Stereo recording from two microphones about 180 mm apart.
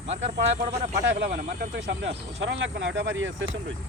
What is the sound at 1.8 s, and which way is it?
Speech, 75° right (ahead or behind).